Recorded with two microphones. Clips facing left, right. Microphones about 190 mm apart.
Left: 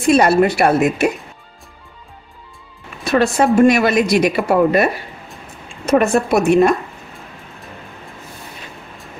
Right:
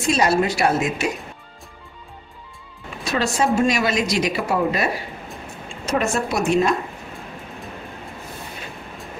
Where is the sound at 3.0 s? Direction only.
60° left (ahead or behind).